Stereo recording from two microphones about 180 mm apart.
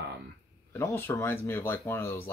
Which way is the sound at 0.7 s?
15° left (ahead or behind).